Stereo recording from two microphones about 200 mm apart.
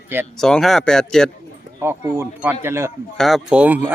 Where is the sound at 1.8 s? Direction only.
10° right (ahead or behind).